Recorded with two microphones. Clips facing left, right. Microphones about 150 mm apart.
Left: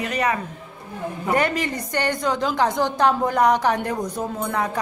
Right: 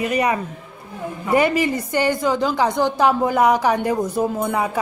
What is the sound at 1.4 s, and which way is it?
A woman's voice, 10° right (ahead or behind).